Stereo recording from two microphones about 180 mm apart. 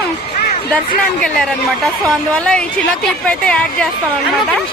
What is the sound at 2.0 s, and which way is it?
Speech, 5° left (ahead or behind).